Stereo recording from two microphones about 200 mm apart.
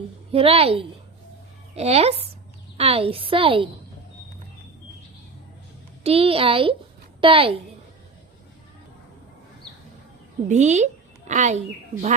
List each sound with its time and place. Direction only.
0.3 s a woman's voice: 30° right (ahead or behind)
6.0 s a woman's voice: 30° right (ahead or behind)
10.5 s a woman's voice: 35° right (ahead or behind)